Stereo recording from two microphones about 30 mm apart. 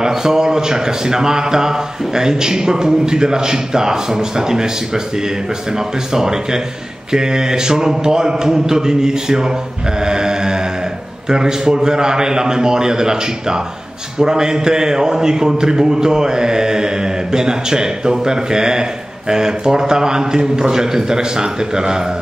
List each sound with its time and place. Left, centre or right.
0.0 s a man's voice: right
9.9 s a sound: right
11.2 s a man's voice: right